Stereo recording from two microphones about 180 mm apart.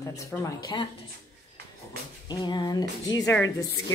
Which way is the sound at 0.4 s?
25° left (ahead or behind).